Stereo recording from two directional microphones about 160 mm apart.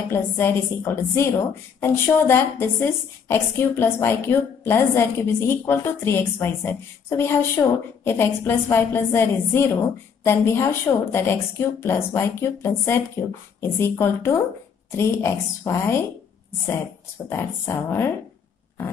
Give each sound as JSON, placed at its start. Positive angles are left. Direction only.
{"t": 0.1, "sound": "a woman's voice", "side_deg": 15}
{"t": 17.3, "sound": "a woman's voice", "side_deg": 15}